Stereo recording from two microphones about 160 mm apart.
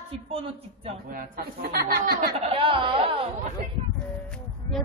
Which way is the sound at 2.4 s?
35° right (ahead or behind).